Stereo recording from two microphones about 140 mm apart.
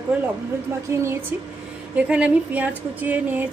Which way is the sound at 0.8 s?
20° right (ahead or behind).